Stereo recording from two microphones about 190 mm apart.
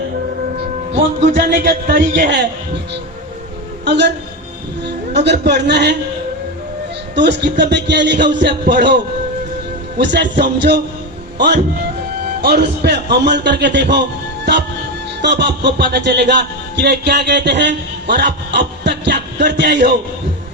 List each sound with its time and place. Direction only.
1.2 s speech: 50° right (ahead or behind)
3.8 s music: 65° right (ahead or behind)
5.2 s music: 60° right (ahead or behind)
7.2 s music: 65° right (ahead or behind)
10.0 s music: 65° right (ahead or behind)
11.3 s a man's voice: 65° right (ahead or behind)
12.4 s music: 60° right (ahead or behind)
15.2 s music: 65° right (ahead or behind)